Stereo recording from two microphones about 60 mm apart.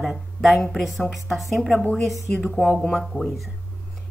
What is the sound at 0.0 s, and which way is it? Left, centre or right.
Speech, centre.